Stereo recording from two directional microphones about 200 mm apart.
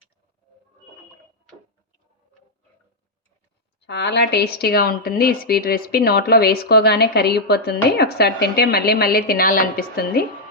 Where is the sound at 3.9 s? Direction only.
60° left (ahead or behind).